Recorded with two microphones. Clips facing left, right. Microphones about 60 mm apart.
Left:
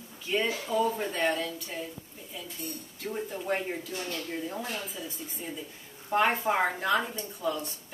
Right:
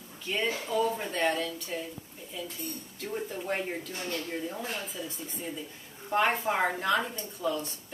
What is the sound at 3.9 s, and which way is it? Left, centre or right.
Speech, right.